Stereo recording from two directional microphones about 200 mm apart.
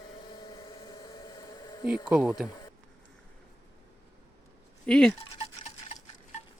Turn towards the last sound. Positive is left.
turn(degrees=35)  # may be behind; listen again after turning